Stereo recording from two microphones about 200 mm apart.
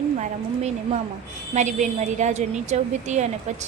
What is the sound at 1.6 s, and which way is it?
A woman's voice, 35° right (ahead or behind).